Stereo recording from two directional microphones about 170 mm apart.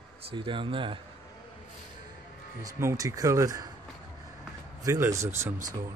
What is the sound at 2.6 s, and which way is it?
Speech, 20° right (ahead or behind).